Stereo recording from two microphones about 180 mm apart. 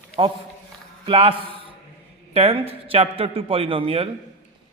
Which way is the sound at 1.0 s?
30° right (ahead or behind).